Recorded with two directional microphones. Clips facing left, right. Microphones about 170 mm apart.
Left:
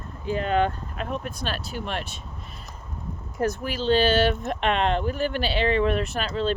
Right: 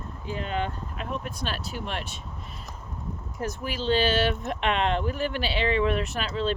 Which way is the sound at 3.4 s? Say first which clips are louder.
Left 6 dB; 55° left (ahead or behind).